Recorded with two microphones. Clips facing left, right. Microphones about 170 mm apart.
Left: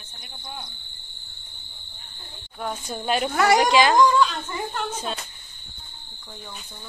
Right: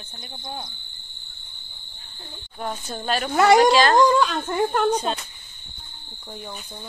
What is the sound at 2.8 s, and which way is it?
Speech, 10° left (ahead or behind).